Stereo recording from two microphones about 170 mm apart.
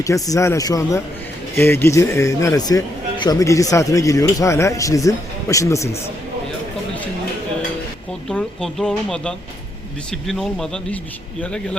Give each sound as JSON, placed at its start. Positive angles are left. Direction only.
{"t": 0.0, "sound": "speech", "side_deg": 20}
{"t": 8.3, "sound": "speech", "side_deg": 5}